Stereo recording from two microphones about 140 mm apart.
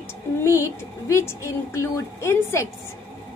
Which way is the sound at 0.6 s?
20° left (ahead or behind).